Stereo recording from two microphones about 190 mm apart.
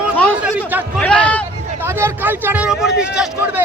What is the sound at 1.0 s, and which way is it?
Speech, 5° left (ahead or behind).